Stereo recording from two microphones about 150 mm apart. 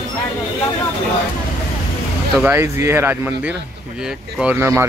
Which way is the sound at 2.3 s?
15° right (ahead or behind).